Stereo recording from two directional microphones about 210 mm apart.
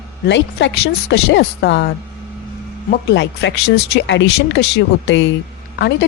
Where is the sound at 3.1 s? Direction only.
55° left (ahead or behind).